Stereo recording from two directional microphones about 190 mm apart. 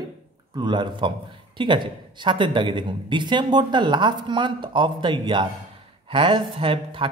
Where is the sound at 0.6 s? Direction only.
25° right (ahead or behind).